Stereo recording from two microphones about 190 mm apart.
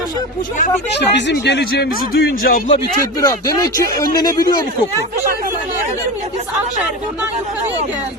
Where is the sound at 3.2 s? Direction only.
20° left (ahead or behind).